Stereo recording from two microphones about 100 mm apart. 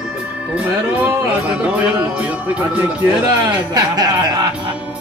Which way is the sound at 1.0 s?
10° right (ahead or behind).